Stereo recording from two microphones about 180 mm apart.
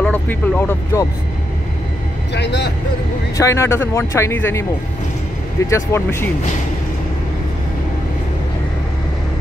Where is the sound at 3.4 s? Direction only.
15° left (ahead or behind).